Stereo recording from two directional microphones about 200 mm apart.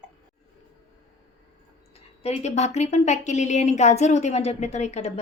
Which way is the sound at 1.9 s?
35° left (ahead or behind).